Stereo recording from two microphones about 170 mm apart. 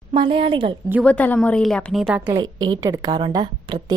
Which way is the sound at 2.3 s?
20° right (ahead or behind).